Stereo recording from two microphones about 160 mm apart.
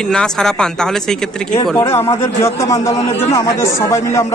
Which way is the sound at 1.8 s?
15° left (ahead or behind).